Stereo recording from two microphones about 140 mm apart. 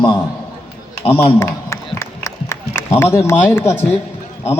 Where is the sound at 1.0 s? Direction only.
15° left (ahead or behind).